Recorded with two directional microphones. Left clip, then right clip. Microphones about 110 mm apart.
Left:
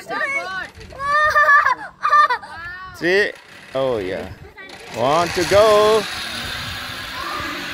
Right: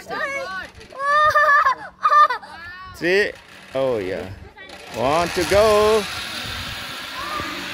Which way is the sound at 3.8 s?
45° right (ahead or behind).